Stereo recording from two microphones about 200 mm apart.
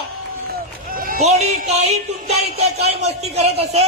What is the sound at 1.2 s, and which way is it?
A man's voice, 35° right (ahead or behind).